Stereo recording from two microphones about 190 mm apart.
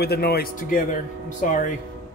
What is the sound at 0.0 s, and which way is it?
A man's voice, 55° left (ahead or behind).